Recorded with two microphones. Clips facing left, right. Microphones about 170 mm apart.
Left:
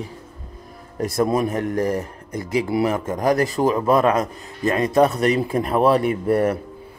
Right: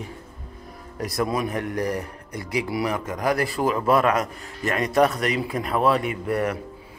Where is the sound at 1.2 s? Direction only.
45° left (ahead or behind).